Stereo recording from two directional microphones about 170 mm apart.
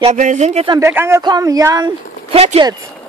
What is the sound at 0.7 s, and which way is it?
A woman's voice, 15° right (ahead or behind).